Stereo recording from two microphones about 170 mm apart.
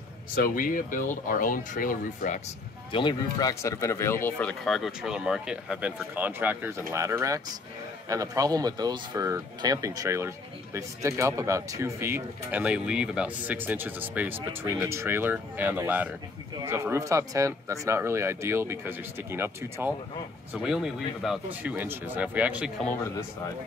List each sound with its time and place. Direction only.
0.4 s speech: 50° left (ahead or behind)
2.9 s speech: 25° left (ahead or behind); by 22.7 s 10° right (ahead or behind)